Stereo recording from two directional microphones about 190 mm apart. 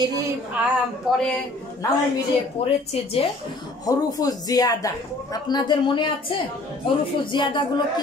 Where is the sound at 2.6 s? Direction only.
30° left (ahead or behind).